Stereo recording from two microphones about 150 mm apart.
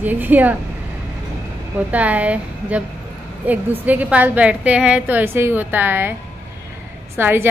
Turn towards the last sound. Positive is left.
turn(degrees=-15)  # may be behind; listen again after turning